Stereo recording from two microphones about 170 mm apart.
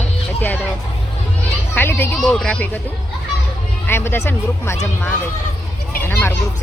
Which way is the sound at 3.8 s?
15° left (ahead or behind).